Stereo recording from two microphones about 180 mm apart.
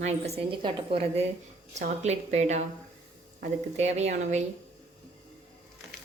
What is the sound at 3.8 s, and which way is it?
Speech, 40° right (ahead or behind).